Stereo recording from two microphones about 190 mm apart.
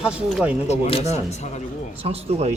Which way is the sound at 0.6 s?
35° left (ahead or behind).